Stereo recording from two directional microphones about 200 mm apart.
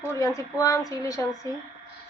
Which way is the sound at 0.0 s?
15° left (ahead or behind).